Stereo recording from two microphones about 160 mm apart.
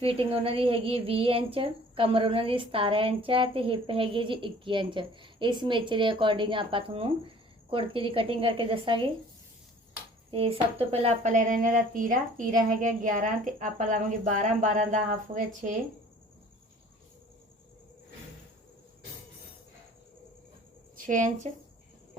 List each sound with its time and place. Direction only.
0.0 s a woman's voice: 35° right (ahead or behind)
10.3 s speech: 35° right (ahead or behind); by 15.7 s 50° right (ahead or behind)
21.1 s speech: 50° right (ahead or behind)